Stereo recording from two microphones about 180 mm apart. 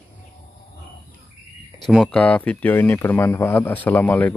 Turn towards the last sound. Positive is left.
turn(degrees=10)  # may be behind; listen again after turning